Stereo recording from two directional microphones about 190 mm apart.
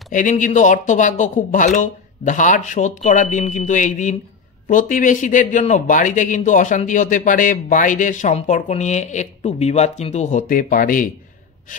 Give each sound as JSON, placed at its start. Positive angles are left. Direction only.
{"t": 0.1, "sound": "speech", "side_deg": 45}